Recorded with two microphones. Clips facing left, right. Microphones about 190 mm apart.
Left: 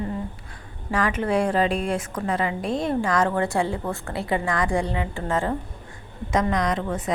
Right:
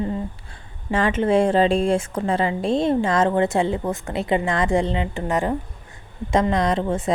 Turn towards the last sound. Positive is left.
turn(degrees=-30)  # may be behind; listen again after turning